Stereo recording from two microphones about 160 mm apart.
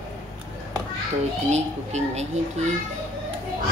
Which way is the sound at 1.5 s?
45° right (ahead or behind).